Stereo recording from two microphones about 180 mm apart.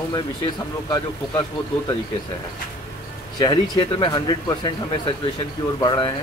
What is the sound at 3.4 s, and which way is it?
Speech, 25° left (ahead or behind).